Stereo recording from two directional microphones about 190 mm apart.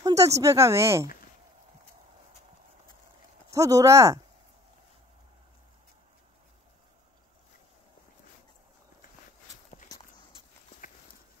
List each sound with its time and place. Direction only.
0.0 s speech: 15° right (ahead or behind)
3.4 s speech: 15° right (ahead or behind)